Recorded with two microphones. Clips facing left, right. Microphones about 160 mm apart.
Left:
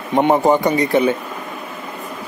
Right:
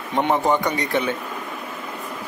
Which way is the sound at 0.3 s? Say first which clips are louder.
Left 5 dB; 35° left (ahead or behind).